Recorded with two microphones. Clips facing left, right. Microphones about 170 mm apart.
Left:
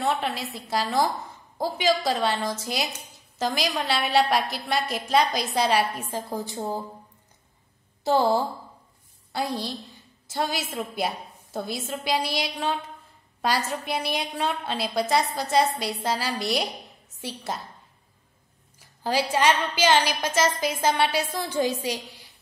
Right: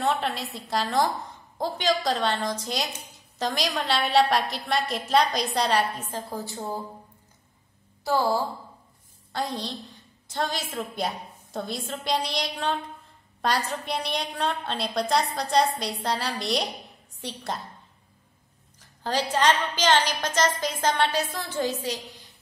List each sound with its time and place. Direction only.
0.0 s a woman's voice: centre (ahead or behind); by 6.8 s 20° left (ahead or behind)
8.0 s speech: 20° left (ahead or behind)
9.3 s a woman's voice: 10° left (ahead or behind)
18.8 s a sound: 10° left (ahead or behind)
19.3 s a woman's voice: 10° left (ahead or behind)